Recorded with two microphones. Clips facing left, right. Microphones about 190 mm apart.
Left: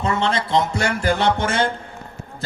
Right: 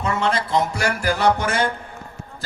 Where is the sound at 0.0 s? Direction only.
25° left (ahead or behind).